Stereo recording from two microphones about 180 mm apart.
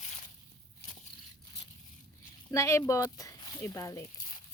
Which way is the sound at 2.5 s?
15° left (ahead or behind).